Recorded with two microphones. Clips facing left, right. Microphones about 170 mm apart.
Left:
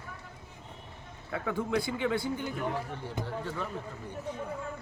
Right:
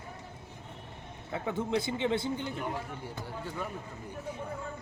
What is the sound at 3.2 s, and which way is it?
Speech, 15° right (ahead or behind).